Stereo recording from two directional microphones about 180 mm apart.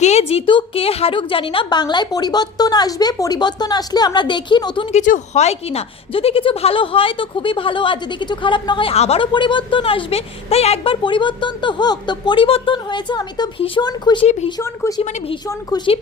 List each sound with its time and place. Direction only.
0.0 s a woman's voice: 35° left (ahead or behind)
4.9 s a woman's voice: 45° left (ahead or behind); by 15.9 s 20° left (ahead or behind)